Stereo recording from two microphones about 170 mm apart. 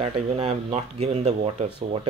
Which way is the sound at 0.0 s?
35° right (ahead or behind).